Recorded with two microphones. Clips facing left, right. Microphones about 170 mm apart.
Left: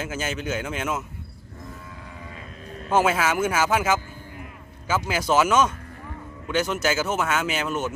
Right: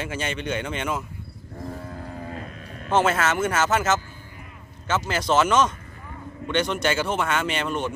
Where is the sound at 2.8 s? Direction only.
10° left (ahead or behind).